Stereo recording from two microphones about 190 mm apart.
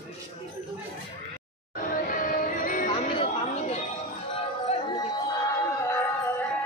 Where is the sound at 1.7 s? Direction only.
45° left (ahead or behind).